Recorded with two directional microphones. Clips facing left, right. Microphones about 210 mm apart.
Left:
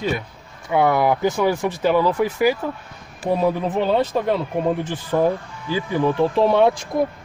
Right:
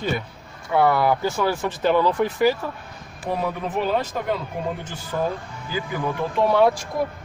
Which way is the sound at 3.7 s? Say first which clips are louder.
Left 4 dB; 30° left (ahead or behind).